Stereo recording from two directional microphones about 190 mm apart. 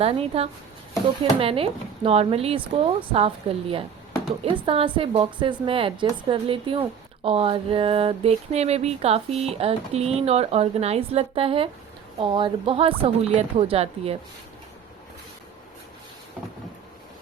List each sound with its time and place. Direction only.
0.0 s a woman's voice: 30° right (ahead or behind)